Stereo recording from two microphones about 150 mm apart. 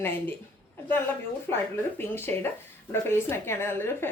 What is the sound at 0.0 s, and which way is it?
Speech, 15° left (ahead or behind).